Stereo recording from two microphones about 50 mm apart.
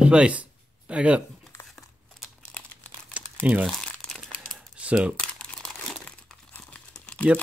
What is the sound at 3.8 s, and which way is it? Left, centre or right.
Crumpling, centre.